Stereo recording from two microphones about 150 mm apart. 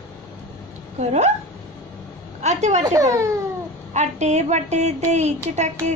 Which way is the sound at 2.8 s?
25° right (ahead or behind).